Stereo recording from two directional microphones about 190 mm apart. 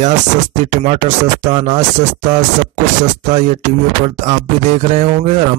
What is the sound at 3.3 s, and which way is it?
Speech, 40° right (ahead or behind).